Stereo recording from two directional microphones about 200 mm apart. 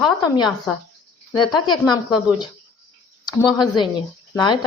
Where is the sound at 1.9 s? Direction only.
20° left (ahead or behind).